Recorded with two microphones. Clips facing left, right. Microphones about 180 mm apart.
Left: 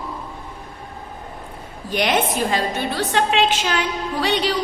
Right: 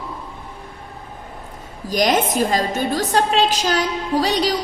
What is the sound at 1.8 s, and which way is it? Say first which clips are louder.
A woman's voice: right 2 dB; 40° right (ahead or behind).